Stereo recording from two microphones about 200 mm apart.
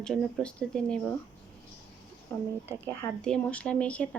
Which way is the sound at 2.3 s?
10° left (ahead or behind).